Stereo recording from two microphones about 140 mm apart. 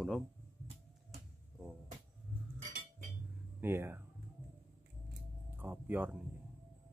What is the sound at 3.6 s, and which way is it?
Speech, 15° right (ahead or behind).